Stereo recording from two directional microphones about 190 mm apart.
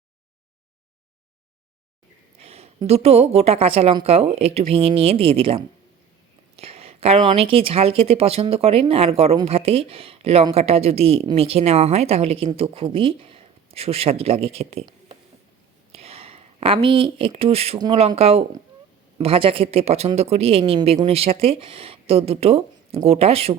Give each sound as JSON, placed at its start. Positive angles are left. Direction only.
{"t": 2.4, "sound": "speech", "side_deg": -35}